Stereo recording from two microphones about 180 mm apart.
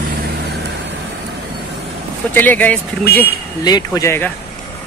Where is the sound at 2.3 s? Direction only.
10° left (ahead or behind).